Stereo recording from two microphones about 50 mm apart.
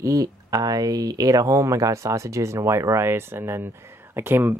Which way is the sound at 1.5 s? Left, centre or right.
Right.